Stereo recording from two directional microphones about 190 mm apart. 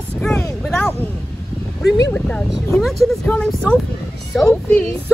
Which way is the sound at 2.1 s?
5° left (ahead or behind).